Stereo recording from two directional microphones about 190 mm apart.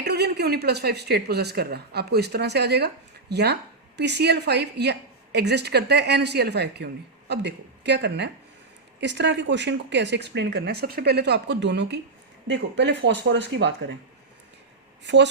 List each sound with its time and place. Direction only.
0.0 s speech: 60° right (ahead or behind)
15.0 s speech: 65° right (ahead or behind)